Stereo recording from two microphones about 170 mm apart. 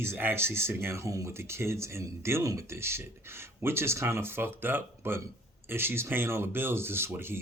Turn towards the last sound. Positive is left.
turn(degrees=-15)  # may be behind; listen again after turning